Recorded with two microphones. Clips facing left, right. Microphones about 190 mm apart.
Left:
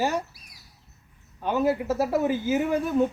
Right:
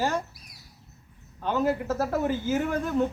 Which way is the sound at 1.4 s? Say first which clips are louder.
Left 2 dB; 10° left (ahead or behind).